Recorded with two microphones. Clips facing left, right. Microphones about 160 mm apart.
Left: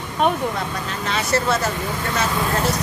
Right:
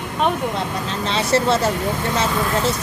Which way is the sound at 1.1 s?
30° right (ahead or behind).